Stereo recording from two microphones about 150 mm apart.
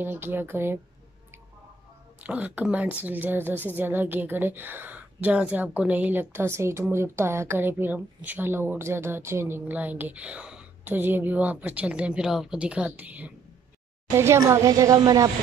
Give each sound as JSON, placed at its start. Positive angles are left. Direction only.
{"t": 0.0, "sound": "a woman's voice", "side_deg": -15}
{"t": 2.2, "sound": "a woman's voice", "side_deg": -10}